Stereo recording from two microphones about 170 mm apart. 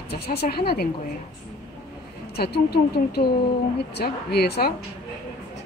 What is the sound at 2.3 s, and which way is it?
Speech, 70° left (ahead or behind).